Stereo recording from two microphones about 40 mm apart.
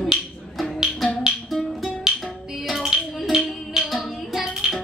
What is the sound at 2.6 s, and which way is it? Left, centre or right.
Hands, centre.